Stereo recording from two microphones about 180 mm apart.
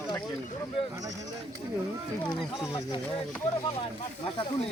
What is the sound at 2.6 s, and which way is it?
Speech, 25° left (ahead or behind).